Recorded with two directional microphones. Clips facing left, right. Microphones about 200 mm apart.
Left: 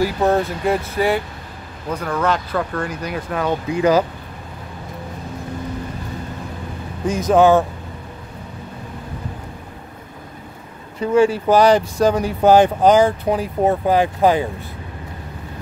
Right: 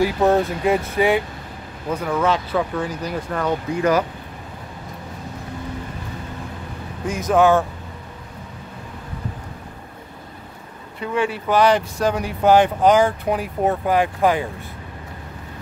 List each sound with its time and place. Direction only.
0.3 s speech: centre (ahead or behind)
7.1 s speech: 35° left (ahead or behind)
11.0 s speech: 40° left (ahead or behind)